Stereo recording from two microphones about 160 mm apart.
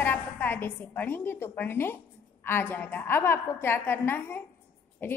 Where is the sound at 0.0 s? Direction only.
10° left (ahead or behind).